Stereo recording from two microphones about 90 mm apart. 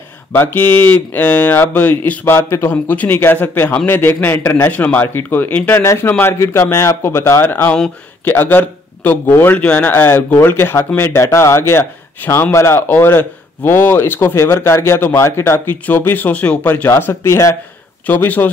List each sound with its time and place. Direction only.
0.3 s speech: 25° left (ahead or behind)
18.0 s speech: 20° left (ahead or behind)